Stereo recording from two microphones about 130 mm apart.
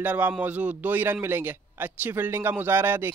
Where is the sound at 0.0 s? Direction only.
15° right (ahead or behind).